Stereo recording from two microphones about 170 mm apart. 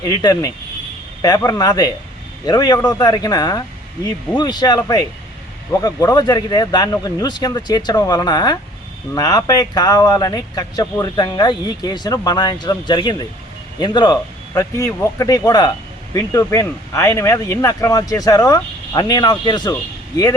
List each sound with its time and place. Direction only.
0.0 s speech: 25° left (ahead or behind)